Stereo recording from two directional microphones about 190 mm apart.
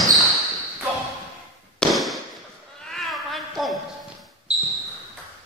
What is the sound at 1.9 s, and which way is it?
Fireworks, centre (ahead or behind).